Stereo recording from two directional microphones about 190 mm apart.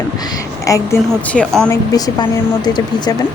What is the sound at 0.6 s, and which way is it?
A woman's voice, 15° left (ahead or behind).